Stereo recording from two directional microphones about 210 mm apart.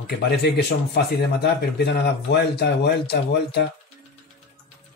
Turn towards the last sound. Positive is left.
turn(degrees=50)  # may be behind; listen again after turning